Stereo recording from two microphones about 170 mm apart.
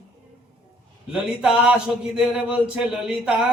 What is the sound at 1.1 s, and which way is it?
Speech, 5° right (ahead or behind).